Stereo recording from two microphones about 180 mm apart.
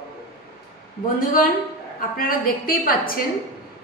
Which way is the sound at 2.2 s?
55° left (ahead or behind).